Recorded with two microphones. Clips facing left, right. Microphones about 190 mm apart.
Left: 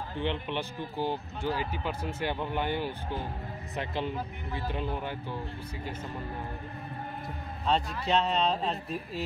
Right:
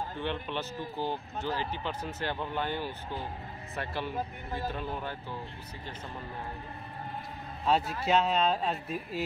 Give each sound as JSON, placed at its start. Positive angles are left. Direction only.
{"t": 0.2, "sound": "speech", "side_deg": 15}
{"t": 7.7, "sound": "a man's voice", "side_deg": -5}